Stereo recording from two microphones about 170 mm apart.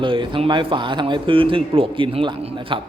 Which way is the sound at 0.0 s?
30° right (ahead or behind).